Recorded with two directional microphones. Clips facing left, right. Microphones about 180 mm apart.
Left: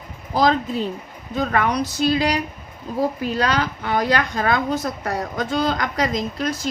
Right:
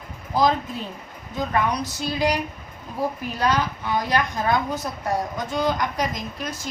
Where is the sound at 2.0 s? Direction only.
80° left.